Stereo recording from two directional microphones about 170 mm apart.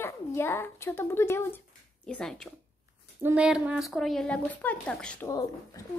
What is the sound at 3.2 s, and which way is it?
Speech, 10° right (ahead or behind).